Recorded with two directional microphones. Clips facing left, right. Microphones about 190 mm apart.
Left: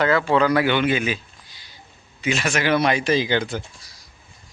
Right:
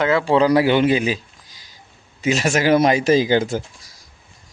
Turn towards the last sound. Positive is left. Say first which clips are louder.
# right 5 dB
turn(degrees=-40)  # may be behind; listen again after turning